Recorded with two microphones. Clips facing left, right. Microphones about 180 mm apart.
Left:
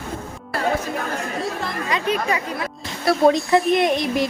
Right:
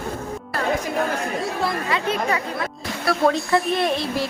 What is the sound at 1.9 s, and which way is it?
A woman's voice, 15° left (ahead or behind).